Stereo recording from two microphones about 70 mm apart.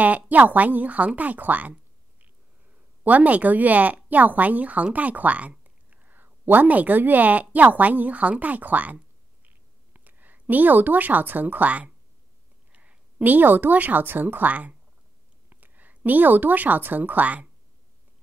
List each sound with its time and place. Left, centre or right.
0.0 s speech: right
3.0 s speech: right